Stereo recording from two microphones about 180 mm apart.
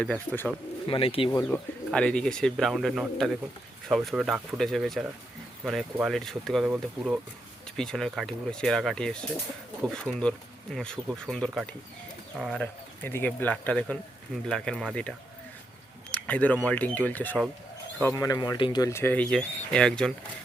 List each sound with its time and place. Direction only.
0.0 s speech: 5° left (ahead or behind)
0.9 s speech: 30° left (ahead or behind)
1.3 s speech: 10° left (ahead or behind)
16.1 s speech: 10° left (ahead or behind)
18.0 s speech: 20° left (ahead or behind)